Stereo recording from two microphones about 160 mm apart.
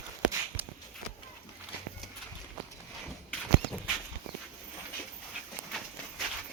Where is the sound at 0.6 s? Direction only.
10° right (ahead or behind).